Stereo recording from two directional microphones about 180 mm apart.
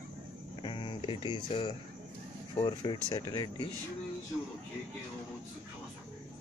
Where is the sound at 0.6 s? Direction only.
25° left (ahead or behind).